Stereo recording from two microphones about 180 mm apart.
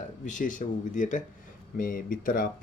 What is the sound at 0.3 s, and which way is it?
Speech, 45° left (ahead or behind).